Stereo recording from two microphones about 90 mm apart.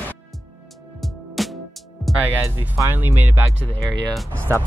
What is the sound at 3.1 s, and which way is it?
Speech, 20° right (ahead or behind).